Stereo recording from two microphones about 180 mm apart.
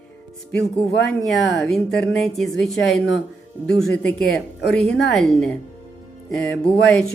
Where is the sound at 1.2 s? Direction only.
Centre (ahead or behind).